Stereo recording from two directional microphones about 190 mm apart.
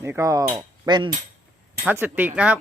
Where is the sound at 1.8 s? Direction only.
10° right (ahead or behind).